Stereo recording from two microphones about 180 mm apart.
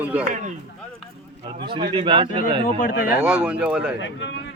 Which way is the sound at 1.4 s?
25° right (ahead or behind).